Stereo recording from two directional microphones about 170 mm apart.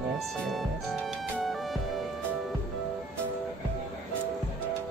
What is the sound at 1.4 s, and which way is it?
Music, centre (ahead or behind).